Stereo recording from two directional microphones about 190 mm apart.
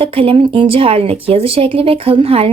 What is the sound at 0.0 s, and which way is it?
Speech, 30° right (ahead or behind).